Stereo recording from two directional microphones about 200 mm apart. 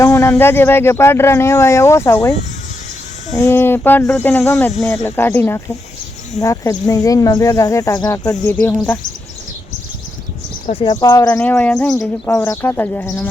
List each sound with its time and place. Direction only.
0.0 s speech: 15° left (ahead or behind)
3.3 s speech: 10° left (ahead or behind)
10.8 s speech: 20° left (ahead or behind)